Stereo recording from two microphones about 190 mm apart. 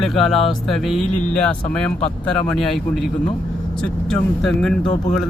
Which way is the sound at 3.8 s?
Centre (ahead or behind).